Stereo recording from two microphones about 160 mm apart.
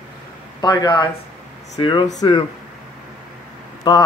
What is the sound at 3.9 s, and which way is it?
Speech, 30° left (ahead or behind).